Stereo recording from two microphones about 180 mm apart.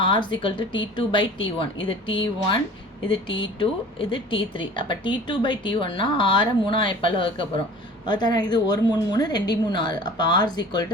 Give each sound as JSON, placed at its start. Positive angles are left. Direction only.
{"t": 0.0, "sound": "a woman's voice", "side_deg": 25}